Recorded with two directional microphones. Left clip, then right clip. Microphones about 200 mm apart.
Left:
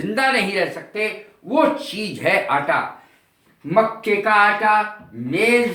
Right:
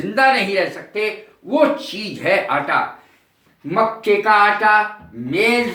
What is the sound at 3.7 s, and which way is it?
Speech, 15° left (ahead or behind).